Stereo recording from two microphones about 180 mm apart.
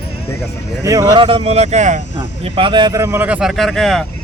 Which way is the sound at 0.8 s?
20° right (ahead or behind).